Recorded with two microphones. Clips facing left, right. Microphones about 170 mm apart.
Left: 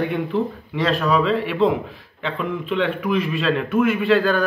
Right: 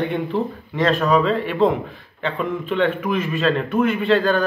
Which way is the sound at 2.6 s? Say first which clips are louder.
Right 2 dB; centre (ahead or behind).